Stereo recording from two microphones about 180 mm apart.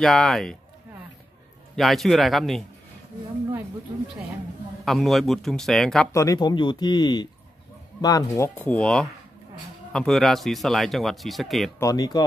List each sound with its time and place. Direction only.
0.0 s speech: centre (ahead or behind)
1.8 s speech: centre (ahead or behind)
4.8 s speech: centre (ahead or behind)
6.1 s speech: 20° left (ahead or behind); by 11.7 s centre (ahead or behind)
11.8 s speech: 20° left (ahead or behind)